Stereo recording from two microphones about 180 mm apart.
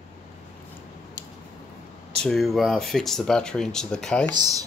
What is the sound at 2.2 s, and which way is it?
Speech, centre (ahead or behind).